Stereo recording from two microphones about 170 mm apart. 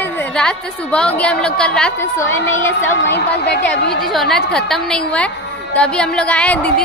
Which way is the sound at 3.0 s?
75° left (ahead or behind).